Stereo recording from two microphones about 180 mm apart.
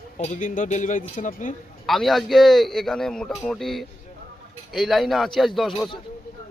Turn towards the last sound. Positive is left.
turn(degrees=0)  # may be behind; listen again after turning